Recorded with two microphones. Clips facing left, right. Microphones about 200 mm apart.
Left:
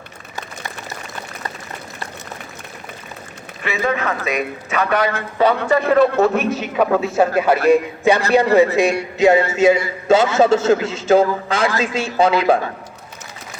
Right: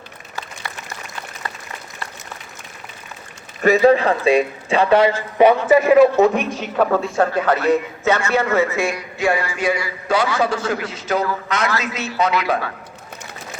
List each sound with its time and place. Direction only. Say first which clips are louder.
3.6 s speech: right 8 dB; 35° right (ahead or behind)
5.6 s a man's voice: right 3 dB; 5° right (ahead or behind); by 12.7 s 30° left (ahead or behind)